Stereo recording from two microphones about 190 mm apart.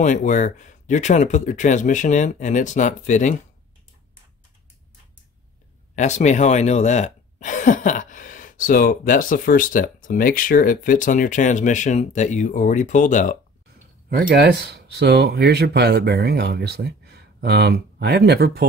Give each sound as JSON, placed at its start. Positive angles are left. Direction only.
{"t": 0.0, "sound": "speech", "side_deg": 40}
{"t": 5.9, "sound": "speech", "side_deg": 40}
{"t": 14.0, "sound": "speech", "side_deg": -55}